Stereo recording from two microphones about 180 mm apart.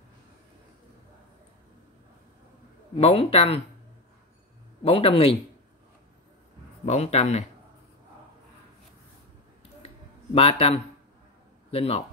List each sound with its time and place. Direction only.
3.0 s speech: 30° left (ahead or behind)
4.8 s speech: 30° left (ahead or behind)
6.9 s speech: 35° left (ahead or behind)
10.3 s a man's voice: 35° left (ahead or behind)